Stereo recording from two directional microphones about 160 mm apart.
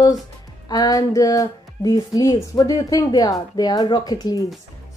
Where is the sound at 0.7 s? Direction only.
25° left (ahead or behind).